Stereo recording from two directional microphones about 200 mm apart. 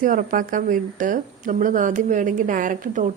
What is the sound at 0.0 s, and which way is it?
A woman's voice, 45° right (ahead or behind).